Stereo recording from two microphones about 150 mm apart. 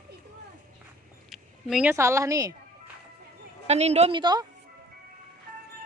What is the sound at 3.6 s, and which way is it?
Speech, 45° right (ahead or behind).